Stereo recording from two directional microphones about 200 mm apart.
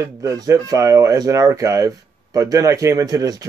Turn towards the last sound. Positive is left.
turn(degrees=-15)  # may be behind; listen again after turning